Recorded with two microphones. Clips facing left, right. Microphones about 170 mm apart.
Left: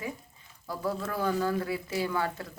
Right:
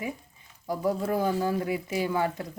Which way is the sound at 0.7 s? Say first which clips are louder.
Right 5 dB; 15° right (ahead or behind).